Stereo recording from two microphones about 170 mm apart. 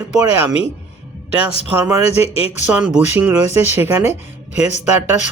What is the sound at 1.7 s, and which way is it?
Speech, 15° right (ahead or behind).